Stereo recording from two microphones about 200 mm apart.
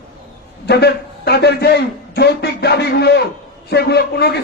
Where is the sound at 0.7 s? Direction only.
55° left (ahead or behind).